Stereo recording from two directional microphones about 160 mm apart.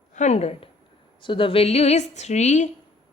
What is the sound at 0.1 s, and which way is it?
A woman's voice, 45° left (ahead or behind).